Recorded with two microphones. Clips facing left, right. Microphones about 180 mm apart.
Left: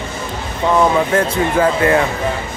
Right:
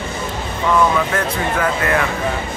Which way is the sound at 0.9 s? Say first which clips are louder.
Left 4 dB; 30° left (ahead or behind).